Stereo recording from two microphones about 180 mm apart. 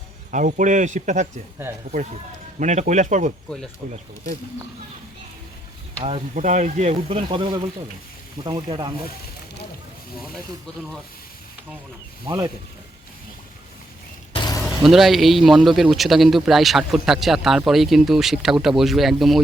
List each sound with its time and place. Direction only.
0.3 s speech: 45° right (ahead or behind)
2.6 s speech: 40° right (ahead or behind)
6.0 s speech: 35° right (ahead or behind)
12.2 s speech: 25° right (ahead or behind)
14.3 s a sound: 20° left (ahead or behind)
14.8 s a man's voice: centre (ahead or behind)